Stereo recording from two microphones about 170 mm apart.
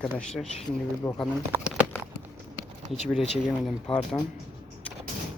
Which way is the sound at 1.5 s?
5° right (ahead or behind).